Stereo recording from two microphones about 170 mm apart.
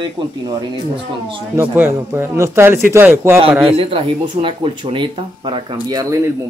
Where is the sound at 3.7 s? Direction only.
30° right (ahead or behind).